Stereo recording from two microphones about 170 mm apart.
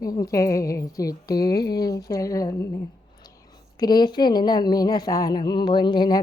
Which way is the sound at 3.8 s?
25° left (ahead or behind).